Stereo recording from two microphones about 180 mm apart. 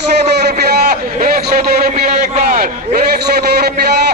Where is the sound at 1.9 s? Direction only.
40° right (ahead or behind).